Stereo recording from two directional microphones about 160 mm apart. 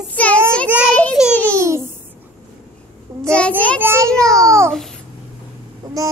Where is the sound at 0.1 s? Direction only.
10° left (ahead or behind).